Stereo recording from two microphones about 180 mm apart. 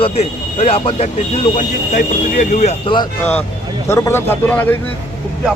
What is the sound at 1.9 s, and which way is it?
Speech, 45° left (ahead or behind).